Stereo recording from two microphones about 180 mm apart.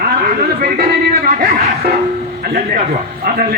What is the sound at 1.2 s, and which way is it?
Speech, 55° right (ahead or behind).